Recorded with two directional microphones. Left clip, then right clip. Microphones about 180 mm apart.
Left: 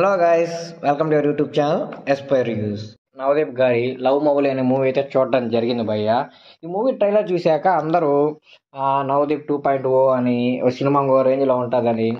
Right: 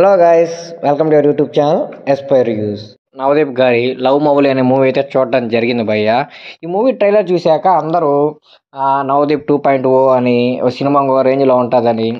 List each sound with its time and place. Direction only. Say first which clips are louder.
0.0 s a man's voice: right 8 dB; 30° right (ahead or behind)
3.2 s speech: right 6 dB; 45° right (ahead or behind)
5.1 s speech: right 5 dB; 30° right (ahead or behind); by 7.3 s 50° right (ahead or behind)
7.3 s a man's voice: right 6 dB; 20° right (ahead or behind)
9.2 s speech: right 7 dB; 50° right (ahead or behind)